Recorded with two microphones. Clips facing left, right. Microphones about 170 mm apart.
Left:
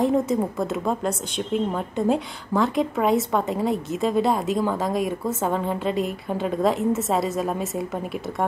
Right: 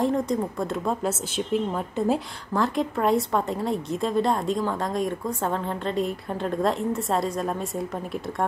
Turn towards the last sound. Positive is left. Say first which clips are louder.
# left 2 dB
turn(degrees=5)  # may be behind; listen again after turning